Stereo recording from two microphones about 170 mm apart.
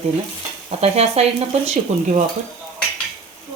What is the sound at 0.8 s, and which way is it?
Frying, 40° right (ahead or behind).